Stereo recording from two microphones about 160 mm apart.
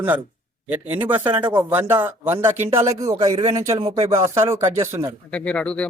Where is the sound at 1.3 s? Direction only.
25° right (ahead or behind).